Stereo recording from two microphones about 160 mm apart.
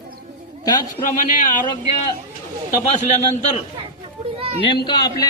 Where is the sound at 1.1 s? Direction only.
55° left (ahead or behind).